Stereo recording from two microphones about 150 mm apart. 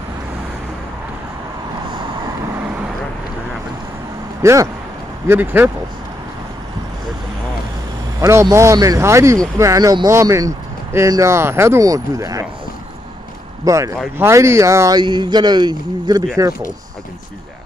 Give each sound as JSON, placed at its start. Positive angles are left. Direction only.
{"t": 4.4, "sound": "speech", "side_deg": -20}
{"t": 8.2, "sound": "speech", "side_deg": -20}
{"t": 13.7, "sound": "speech", "side_deg": -20}